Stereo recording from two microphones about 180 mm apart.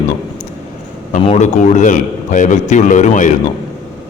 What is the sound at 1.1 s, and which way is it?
A man's voice, 40° left (ahead or behind).